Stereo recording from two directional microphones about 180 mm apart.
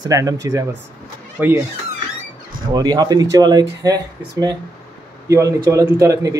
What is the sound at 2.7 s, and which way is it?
A man's voice, 20° right (ahead or behind).